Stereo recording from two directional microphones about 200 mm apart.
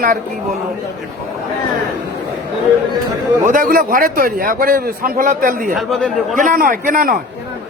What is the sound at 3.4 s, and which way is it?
A man's voice, 40° right (ahead or behind).